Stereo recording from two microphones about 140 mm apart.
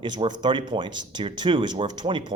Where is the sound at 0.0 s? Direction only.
35° right (ahead or behind).